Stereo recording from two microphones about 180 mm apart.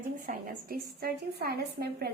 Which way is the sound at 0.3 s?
55° right (ahead or behind).